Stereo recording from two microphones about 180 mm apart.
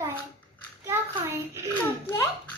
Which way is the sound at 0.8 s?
15° right (ahead or behind).